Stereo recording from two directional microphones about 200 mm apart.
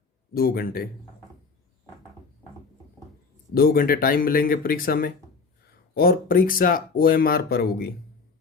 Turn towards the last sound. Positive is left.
turn(degrees=50)  # may be behind; listen again after turning